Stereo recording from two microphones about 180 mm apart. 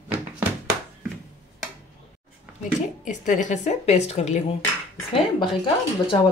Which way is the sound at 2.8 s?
45° left (ahead or behind).